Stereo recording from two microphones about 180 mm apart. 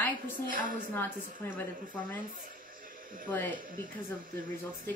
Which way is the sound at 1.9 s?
50° right (ahead or behind).